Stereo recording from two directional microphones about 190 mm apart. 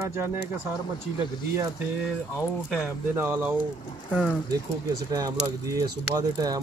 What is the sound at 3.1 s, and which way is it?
Speech, 10° right (ahead or behind).